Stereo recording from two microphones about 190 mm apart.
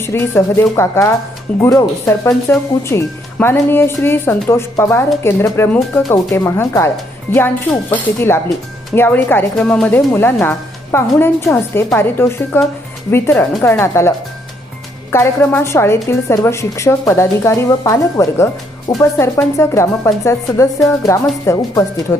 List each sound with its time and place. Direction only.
0.0 s speech: 10° left (ahead or behind)
15.1 s speech: 15° left (ahead or behind)